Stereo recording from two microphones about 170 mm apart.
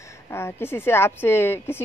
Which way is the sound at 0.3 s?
15° left (ahead or behind).